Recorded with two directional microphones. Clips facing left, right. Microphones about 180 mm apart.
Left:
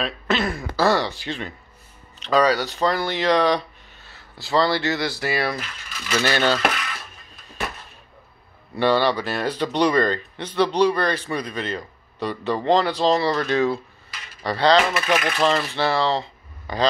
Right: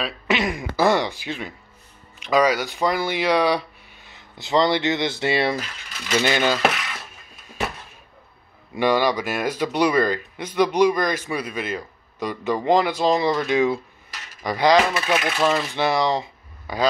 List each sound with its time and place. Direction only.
0.3 s throat clearing: 15° right (ahead or behind)
2.2 s speech: 10° right (ahead or behind)
8.7 s speech: 10° right (ahead or behind)